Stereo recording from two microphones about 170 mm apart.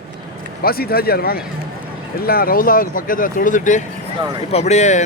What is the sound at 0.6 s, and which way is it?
Speech, 65° left (ahead or behind).